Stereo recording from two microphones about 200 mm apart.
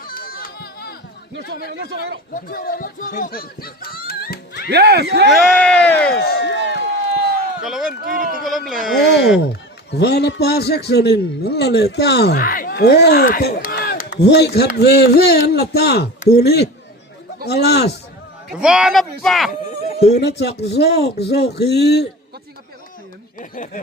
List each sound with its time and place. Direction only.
0.0 s a sound: 45° left (ahead or behind)
1.7 s speech: 55° right (ahead or behind)
2.3 s speech: 45° left (ahead or behind)
4.7 s speech: 55° right (ahead or behind)
5.3 s speech: 5° left (ahead or behind)
6.1 s a sound: 50° left (ahead or behind)
7.6 s speech: centre (ahead or behind)
8.0 s speech: 40° right (ahead or behind)
8.4 s speech: centre (ahead or behind)
9.9 s a man's voice: 55° left (ahead or behind)
18.5 s speech: 5° right (ahead or behind)
20.1 s a man's voice: 55° left (ahead or behind)
23.4 s speech: 40° left (ahead or behind)